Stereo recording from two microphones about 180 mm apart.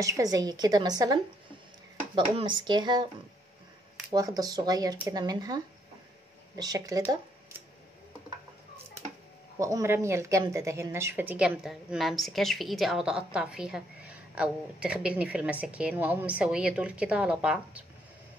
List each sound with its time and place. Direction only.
0.0 s a woman's voice: 20° right (ahead or behind)
4.1 s a woman's voice: 20° right (ahead or behind)
9.6 s speech: 15° right (ahead or behind)